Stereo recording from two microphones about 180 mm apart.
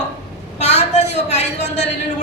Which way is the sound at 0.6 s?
40° left (ahead or behind).